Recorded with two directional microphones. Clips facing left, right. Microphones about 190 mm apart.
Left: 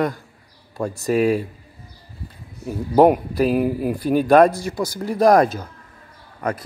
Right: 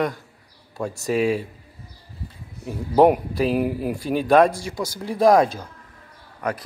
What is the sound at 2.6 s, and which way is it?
A man's voice, centre (ahead or behind).